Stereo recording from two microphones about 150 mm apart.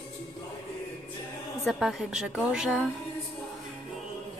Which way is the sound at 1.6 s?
5° right (ahead or behind).